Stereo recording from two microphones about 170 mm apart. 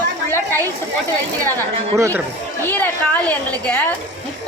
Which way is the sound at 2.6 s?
10° left (ahead or behind).